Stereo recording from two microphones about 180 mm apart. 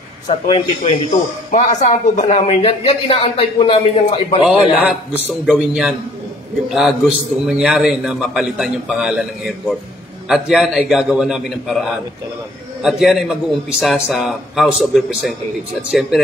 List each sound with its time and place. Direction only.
0.3 s a man's voice: 35° left (ahead or behind)
4.5 s a man's voice: 5° right (ahead or behind)